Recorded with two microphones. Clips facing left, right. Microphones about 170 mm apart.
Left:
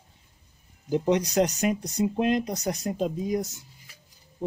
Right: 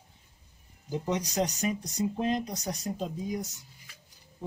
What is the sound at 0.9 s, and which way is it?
Speech, 75° left (ahead or behind).